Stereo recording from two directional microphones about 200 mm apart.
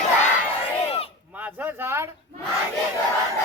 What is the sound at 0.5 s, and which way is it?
Crowd, 30° left (ahead or behind).